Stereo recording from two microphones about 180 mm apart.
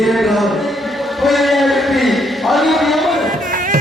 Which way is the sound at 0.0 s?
Centre (ahead or behind).